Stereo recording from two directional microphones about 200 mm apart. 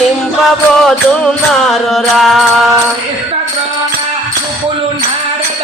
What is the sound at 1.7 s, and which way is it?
Music, centre (ahead or behind).